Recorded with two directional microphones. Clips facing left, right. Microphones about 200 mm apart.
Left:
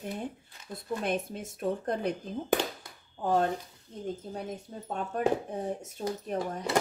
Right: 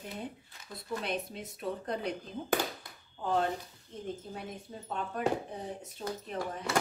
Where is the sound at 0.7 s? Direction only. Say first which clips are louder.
Left 4 dB; 50° left (ahead or behind).